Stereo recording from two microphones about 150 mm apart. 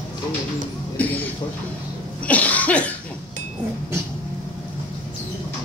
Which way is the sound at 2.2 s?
10° left (ahead or behind).